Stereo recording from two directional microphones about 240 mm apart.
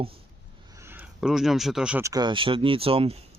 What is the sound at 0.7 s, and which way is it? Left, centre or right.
Speech, centre.